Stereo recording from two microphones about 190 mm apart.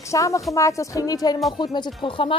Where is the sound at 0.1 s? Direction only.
15° left (ahead or behind).